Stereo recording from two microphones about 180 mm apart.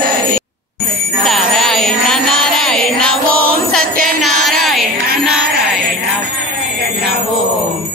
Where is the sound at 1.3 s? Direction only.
Centre (ahead or behind).